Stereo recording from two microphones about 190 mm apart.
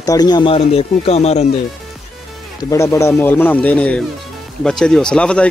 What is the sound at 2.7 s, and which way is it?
Speech, 15° left (ahead or behind).